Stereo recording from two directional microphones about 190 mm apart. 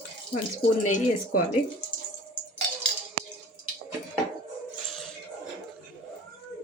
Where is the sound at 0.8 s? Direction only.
40° left (ahead or behind).